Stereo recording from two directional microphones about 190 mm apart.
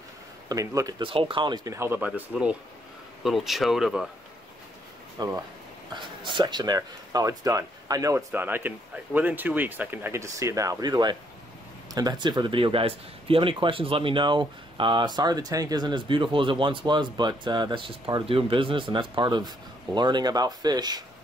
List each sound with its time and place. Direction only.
0.5 s speech: 20° right (ahead or behind); by 4.1 s centre (ahead or behind)
5.2 s speech: 20° right (ahead or behind)